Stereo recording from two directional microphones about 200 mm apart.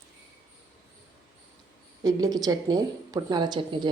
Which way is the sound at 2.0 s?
20° right (ahead or behind).